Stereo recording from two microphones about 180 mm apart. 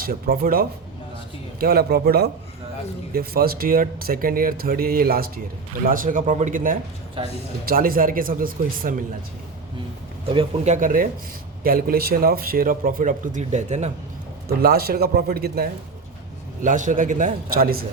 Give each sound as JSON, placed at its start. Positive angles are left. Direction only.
{"t": 0.0, "sound": "speech", "side_deg": -55}
{"t": 10.3, "sound": "speech", "side_deg": -45}
{"t": 14.6, "sound": "speech", "side_deg": -55}
{"t": 16.6, "sound": "speech", "side_deg": -45}